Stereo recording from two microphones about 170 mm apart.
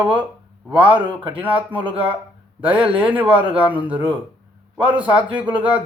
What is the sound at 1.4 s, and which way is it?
Speech, 10° right (ahead or behind).